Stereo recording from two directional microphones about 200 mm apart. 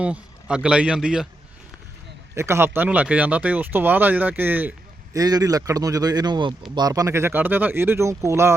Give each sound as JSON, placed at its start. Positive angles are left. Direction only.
{"t": 0.0, "sound": "a man's voice", "side_deg": -5}
{"t": 2.3, "sound": "speech", "side_deg": -15}